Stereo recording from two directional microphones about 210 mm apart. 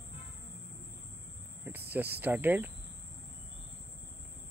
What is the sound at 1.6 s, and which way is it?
Cricket, 10° right (ahead or behind).